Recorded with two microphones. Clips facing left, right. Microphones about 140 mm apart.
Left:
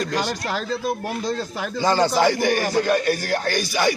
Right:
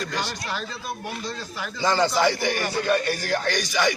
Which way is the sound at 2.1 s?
10° left (ahead or behind).